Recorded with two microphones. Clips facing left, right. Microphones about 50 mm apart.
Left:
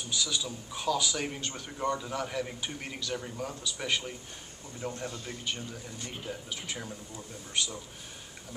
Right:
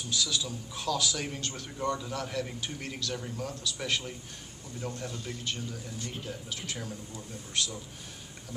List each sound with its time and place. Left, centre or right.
0.1 s a man's voice: centre